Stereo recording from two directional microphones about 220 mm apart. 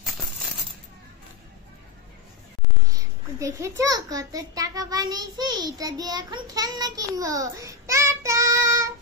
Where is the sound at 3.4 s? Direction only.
15° right (ahead or behind).